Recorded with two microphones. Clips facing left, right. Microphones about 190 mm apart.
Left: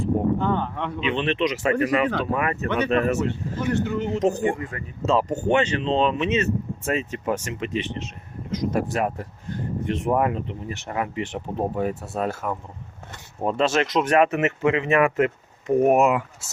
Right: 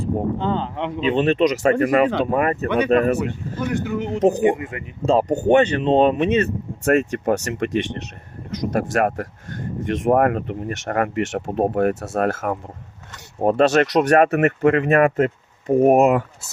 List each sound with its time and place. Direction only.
0.4 s speech: 20° right (ahead or behind)
1.0 s speech: 40° right (ahead or behind)
2.6 s speech: 10° right (ahead or behind)
2.9 s speech: 40° right (ahead or behind)
3.2 s speech: 15° right (ahead or behind)
5.0 s speech: 55° right (ahead or behind)
7.3 s speech: 75° right (ahead or behind)
9.8 s speech: 60° right (ahead or behind); by 11.6 s 80° right
11.7 s speech: 70° right (ahead or behind)
13.4 s speech: 55° right (ahead or behind)
14.3 s speech: 55° right (ahead or behind); by 16.2 s 35° right (ahead or behind)